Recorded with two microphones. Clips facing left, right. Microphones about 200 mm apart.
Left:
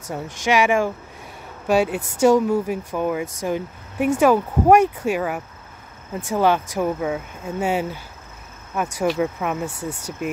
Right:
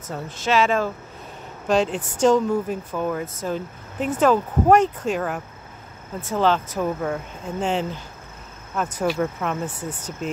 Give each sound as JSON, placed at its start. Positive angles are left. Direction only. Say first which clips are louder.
{"t": 0.0, "sound": "speech", "louder": "left 2 dB", "side_deg": 15}